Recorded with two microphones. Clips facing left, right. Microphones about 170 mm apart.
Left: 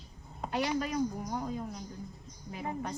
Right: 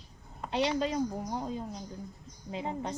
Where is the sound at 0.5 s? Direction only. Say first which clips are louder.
Right 2 dB; 25° right (ahead or behind).